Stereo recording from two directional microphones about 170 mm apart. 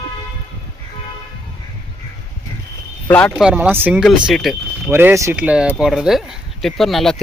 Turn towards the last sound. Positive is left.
turn(degrees=0)  # may be behind; listen again after turning